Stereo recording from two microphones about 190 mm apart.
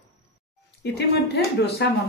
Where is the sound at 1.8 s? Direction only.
60° left (ahead or behind).